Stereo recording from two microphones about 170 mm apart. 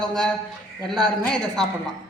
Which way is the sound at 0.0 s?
Centre (ahead or behind).